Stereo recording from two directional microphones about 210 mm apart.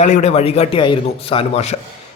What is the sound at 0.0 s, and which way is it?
A man's voice, 35° left (ahead or behind).